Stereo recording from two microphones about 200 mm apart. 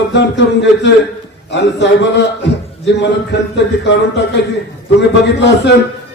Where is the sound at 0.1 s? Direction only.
60° left (ahead or behind).